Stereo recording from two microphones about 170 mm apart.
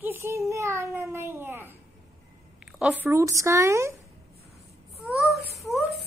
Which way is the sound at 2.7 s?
5° right (ahead or behind).